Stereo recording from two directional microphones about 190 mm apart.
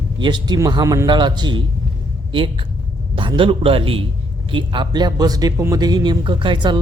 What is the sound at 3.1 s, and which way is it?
A man's voice, 25° right (ahead or behind).